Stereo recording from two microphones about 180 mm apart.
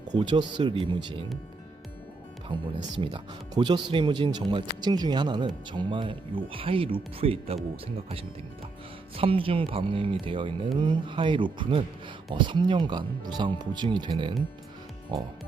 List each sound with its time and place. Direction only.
0.1 s speech: 25° right (ahead or behind)
2.5 s speech: 25° right (ahead or behind)